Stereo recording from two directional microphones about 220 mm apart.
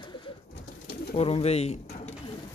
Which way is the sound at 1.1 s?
25° left (ahead or behind).